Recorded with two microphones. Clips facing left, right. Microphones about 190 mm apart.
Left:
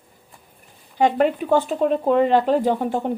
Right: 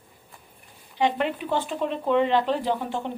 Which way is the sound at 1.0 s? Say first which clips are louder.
Left 6 dB; 45° left (ahead or behind).